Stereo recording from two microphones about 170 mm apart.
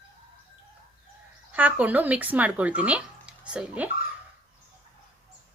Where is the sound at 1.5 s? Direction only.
10° right (ahead or behind).